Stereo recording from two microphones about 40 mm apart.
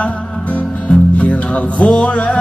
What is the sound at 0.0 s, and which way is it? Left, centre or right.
Music, left.